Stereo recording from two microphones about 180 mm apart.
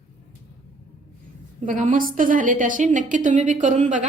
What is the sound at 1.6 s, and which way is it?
A woman's voice, 45° right (ahead or behind).